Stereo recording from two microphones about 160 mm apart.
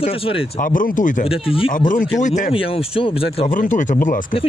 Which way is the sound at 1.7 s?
55° left (ahead or behind).